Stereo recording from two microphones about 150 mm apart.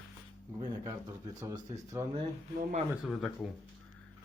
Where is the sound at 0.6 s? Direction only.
25° right (ahead or behind).